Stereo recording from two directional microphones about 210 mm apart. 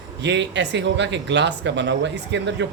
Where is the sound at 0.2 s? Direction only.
55° right (ahead or behind).